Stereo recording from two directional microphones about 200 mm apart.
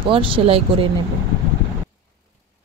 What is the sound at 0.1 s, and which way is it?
Speech, 25° right (ahead or behind).